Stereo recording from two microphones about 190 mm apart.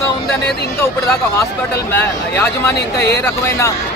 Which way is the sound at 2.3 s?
15° left (ahead or behind).